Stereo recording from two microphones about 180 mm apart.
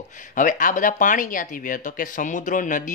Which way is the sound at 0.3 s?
45° left (ahead or behind).